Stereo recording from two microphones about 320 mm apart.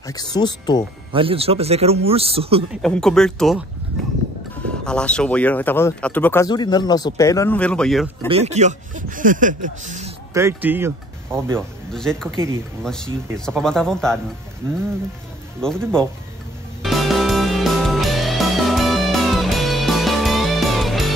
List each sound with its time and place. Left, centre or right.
0.0 s speech: centre
1.1 s speech: centre
2.7 s speech: centre
4.8 s speech: centre
8.3 s speech: centre
10.3 s speech: centre
15.6 s speech: centre
16.8 s music: centre